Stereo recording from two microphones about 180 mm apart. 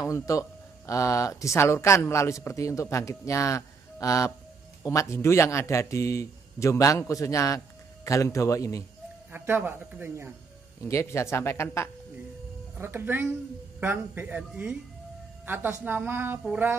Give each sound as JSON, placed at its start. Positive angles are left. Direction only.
{"t": 0.0, "sound": "speech", "side_deg": 15}
{"t": 9.3, "sound": "a woman's voice", "side_deg": -10}
{"t": 10.9, "sound": "speech", "side_deg": 15}
{"t": 12.7, "sound": "a woman's voice", "side_deg": -10}